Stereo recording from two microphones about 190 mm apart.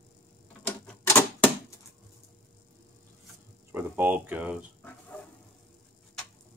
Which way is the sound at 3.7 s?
10° right (ahead or behind).